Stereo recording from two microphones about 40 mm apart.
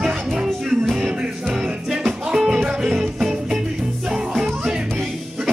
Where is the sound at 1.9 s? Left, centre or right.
Centre.